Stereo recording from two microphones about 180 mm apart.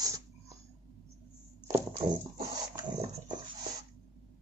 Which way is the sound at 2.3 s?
25° right (ahead or behind).